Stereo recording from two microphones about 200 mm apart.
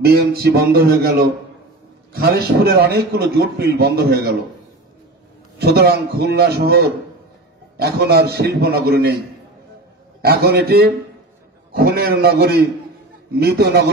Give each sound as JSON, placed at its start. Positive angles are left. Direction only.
{"t": 0.0, "sound": "a man's voice", "side_deg": -50}
{"t": 5.6, "sound": "a man's voice", "side_deg": -55}
{"t": 10.2, "sound": "a man's voice", "side_deg": -50}